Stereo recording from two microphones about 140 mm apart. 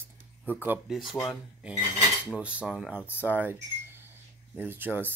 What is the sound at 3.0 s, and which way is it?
Speech, 15° left (ahead or behind).